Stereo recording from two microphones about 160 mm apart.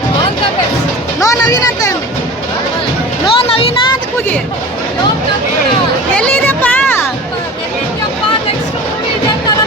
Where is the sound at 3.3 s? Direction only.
35° left (ahead or behind).